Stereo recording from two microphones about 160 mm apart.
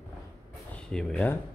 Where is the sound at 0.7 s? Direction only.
5° left (ahead or behind).